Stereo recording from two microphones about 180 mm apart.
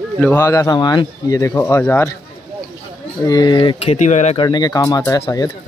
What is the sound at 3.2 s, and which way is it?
Speech, 20° left (ahead or behind).